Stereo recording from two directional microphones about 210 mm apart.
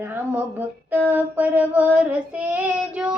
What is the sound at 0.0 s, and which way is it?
Female singing, 10° right (ahead or behind).